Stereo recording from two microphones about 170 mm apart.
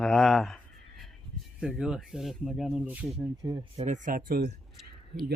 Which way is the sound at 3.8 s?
45° right (ahead or behind).